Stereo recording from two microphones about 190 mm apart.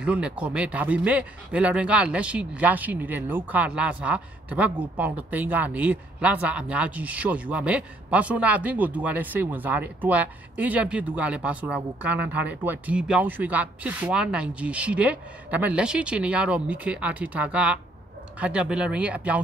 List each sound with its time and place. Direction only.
0.0 s speech: 5° right (ahead or behind)